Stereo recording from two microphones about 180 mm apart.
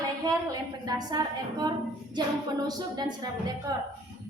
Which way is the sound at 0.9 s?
20° right (ahead or behind).